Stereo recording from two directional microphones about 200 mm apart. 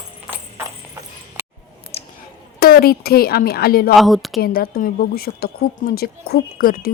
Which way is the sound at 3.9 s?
Centre (ahead or behind).